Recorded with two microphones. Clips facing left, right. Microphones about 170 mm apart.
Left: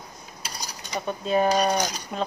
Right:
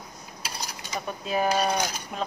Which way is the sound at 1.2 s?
5° right (ahead or behind).